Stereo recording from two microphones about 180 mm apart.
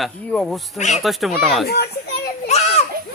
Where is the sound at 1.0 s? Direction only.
Centre (ahead or behind).